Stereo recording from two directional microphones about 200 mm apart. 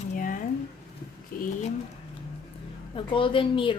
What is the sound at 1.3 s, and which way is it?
Pigeon, 45° left (ahead or behind).